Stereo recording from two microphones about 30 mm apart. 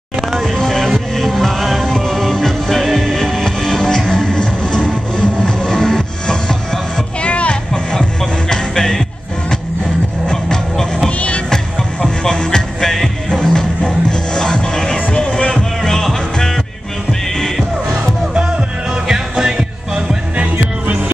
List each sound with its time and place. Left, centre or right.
0.5 s music: centre
2.8 s music: centre
3.1 s music: centre
7.2 s music: left
8.5 s music: left
10.2 s music: left
11.1 s music: left
11.5 s music: left
12.9 s music: centre
13.4 s music: left
19.0 s music: centre
20.3 s music: right